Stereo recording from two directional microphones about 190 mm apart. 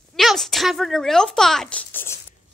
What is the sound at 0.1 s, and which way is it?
Speech, centre (ahead or behind).